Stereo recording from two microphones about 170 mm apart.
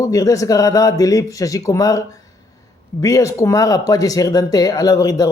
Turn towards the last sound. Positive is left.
turn(degrees=20)  # may be behind; listen again after turning